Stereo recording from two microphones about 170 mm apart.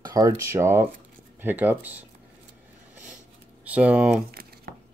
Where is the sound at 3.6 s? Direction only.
10° right (ahead or behind).